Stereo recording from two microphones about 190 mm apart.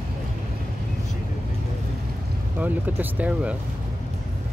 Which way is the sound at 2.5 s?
10° right (ahead or behind).